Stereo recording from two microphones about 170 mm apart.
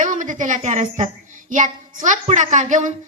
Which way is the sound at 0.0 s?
50° right (ahead or behind).